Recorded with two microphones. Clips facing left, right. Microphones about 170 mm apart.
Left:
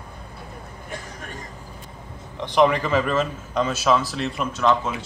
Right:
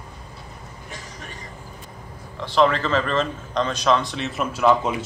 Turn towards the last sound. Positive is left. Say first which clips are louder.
# right 2 dB
turn(degrees=-20)  # may be behind; listen again after turning